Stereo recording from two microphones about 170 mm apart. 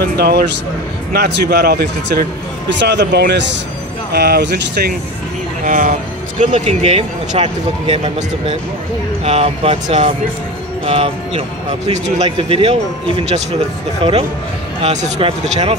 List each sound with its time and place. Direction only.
0.0 s speech: 65° right (ahead or behind)
2.8 s speech: 90° right
4.1 s speech: 70° right (ahead or behind); by 4.9 s 85° right
5.6 s speech: 50° right (ahead or behind)
14.8 s speech: 40° right (ahead or behind)